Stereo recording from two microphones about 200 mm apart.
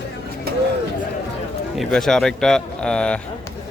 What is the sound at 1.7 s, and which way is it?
Speech, centre (ahead or behind).